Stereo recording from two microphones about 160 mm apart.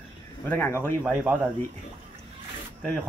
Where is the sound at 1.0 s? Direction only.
10° right (ahead or behind).